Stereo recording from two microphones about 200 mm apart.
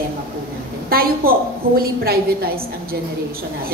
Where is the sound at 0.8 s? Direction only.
50° right (ahead or behind).